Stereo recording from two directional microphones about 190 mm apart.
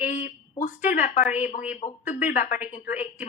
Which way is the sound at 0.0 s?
40° left (ahead or behind).